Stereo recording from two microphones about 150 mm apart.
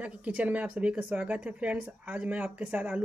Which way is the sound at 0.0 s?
10° right (ahead or behind).